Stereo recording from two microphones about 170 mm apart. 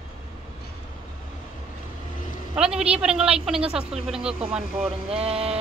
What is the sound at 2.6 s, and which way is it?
Speech, 5° right (ahead or behind).